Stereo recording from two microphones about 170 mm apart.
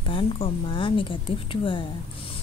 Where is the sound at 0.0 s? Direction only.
30° left (ahead or behind).